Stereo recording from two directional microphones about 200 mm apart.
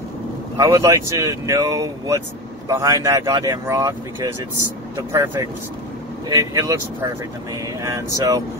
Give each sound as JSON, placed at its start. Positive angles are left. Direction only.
{"t": 0.6, "sound": "speech", "side_deg": -15}